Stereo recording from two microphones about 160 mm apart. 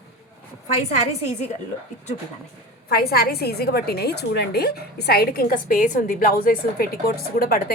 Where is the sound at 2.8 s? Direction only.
75° left (ahead or behind).